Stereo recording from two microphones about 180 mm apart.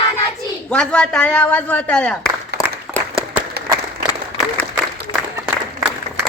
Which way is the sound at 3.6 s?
65° right (ahead or behind).